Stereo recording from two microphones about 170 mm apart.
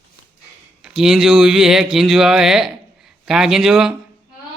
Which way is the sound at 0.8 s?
5° right (ahead or behind).